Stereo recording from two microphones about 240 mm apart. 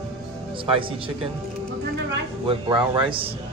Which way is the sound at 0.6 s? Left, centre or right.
Right.